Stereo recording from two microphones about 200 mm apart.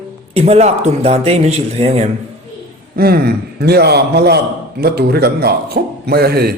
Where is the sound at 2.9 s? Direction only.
50° right (ahead or behind).